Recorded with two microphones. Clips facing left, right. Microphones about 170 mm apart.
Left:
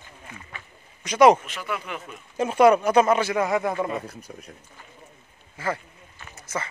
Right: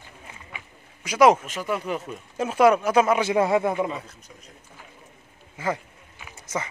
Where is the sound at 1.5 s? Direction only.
40° right (ahead or behind).